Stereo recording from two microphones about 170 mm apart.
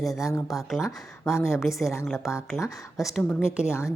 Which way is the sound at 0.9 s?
15° left (ahead or behind).